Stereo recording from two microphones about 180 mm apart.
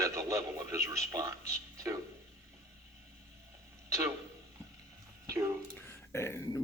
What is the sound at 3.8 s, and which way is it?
Speech, 15° right (ahead or behind).